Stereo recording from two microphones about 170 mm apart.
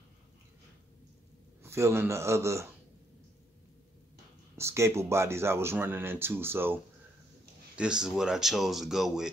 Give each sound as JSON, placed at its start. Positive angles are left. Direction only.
{"t": 1.6, "sound": "speech", "side_deg": -15}
{"t": 4.6, "sound": "speech", "side_deg": -15}